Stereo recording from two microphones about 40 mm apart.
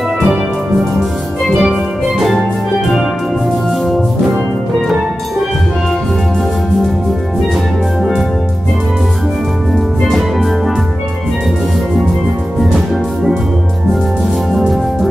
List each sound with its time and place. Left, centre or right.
1.4 s music: centre
8.0 s music: centre
10.0 s music: centre
14.5 s music: centre